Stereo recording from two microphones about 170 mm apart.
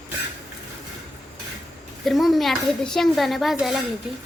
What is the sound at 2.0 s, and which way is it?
A woman's voice, centre (ahead or behind).